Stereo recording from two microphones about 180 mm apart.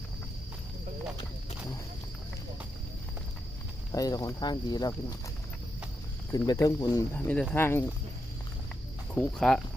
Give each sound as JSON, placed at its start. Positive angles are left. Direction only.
{"t": 3.9, "sound": "speech", "side_deg": 20}
{"t": 6.3, "sound": "speech", "side_deg": 20}
{"t": 9.1, "sound": "speech", "side_deg": 5}